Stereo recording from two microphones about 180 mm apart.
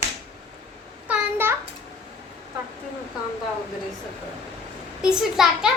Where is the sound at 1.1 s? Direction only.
10° right (ahead or behind).